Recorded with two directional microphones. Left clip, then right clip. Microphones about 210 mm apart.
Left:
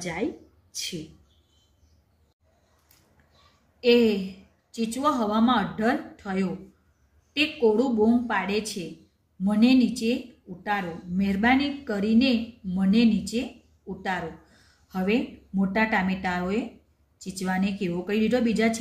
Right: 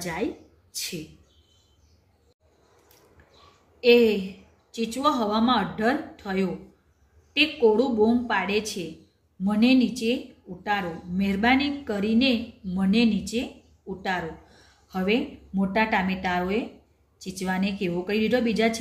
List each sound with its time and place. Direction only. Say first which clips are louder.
0.0 s speech: right 1 dB; 5° left (ahead or behind)
3.8 s speech: right 2 dB; 10° left (ahead or behind)